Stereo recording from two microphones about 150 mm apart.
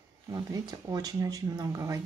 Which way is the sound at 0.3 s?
25° right (ahead or behind).